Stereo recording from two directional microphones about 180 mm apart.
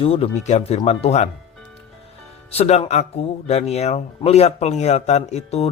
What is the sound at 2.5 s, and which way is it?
Speech, 35° left (ahead or behind).